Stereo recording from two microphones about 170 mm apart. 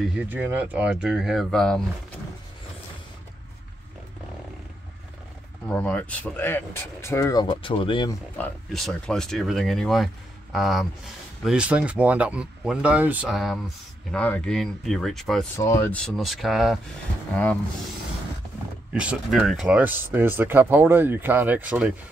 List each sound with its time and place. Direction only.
0.1 s speech: 10° right (ahead or behind)
5.7 s speech: 5° left (ahead or behind); by 8.1 s 30° left (ahead or behind)
8.4 s speech: 5° left (ahead or behind)
15.5 s speech: 15° left (ahead or behind); by 16.8 s centre (ahead or behind)
18.9 s speech: 5° right (ahead or behind)